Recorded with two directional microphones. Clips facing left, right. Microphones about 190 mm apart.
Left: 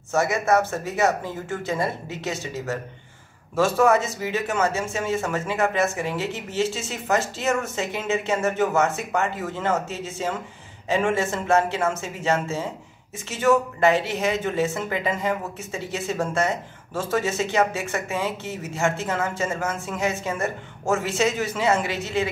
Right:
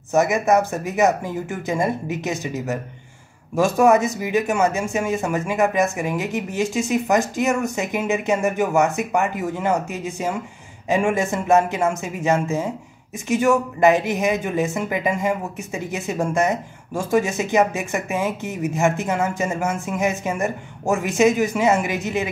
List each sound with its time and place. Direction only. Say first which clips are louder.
0.1 s speech: right 4 dB; 15° right (ahead or behind)